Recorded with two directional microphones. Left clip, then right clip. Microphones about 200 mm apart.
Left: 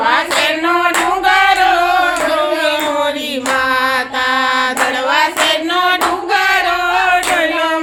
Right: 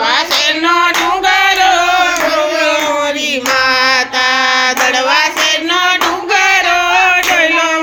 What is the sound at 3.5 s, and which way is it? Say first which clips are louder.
Child singing: right 3 dB; 15° right (ahead or behind).